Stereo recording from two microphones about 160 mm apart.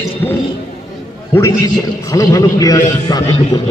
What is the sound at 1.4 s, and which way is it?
A man's voice, 15° left (ahead or behind).